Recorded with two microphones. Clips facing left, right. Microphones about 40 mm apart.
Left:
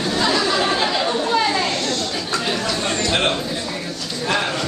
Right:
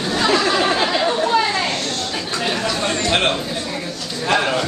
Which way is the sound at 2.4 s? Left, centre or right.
Centre.